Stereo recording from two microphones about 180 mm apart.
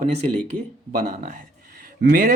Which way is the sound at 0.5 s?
50° right (ahead or behind).